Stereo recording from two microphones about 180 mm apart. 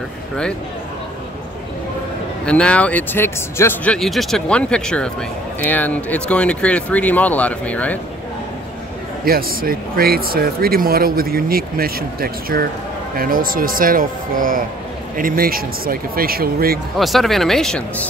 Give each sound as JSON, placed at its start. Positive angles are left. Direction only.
{"t": 2.4, "sound": "speech", "side_deg": 5}
{"t": 9.2, "sound": "speech", "side_deg": -55}
{"t": 17.0, "sound": "speech", "side_deg": 0}